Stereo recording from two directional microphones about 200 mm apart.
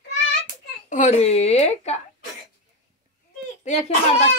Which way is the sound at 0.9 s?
35° left (ahead or behind).